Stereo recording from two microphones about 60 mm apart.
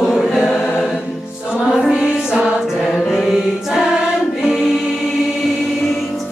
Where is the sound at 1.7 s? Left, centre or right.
Centre.